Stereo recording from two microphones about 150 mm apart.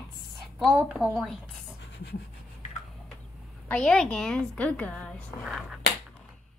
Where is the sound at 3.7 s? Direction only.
5° left (ahead or behind).